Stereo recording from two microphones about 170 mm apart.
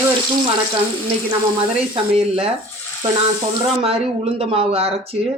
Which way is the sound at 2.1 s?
35° right (ahead or behind).